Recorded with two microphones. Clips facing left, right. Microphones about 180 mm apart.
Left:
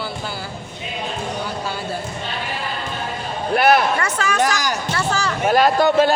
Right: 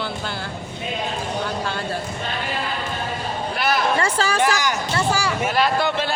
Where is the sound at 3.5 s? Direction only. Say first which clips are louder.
Left 9 dB; 55° left (ahead or behind).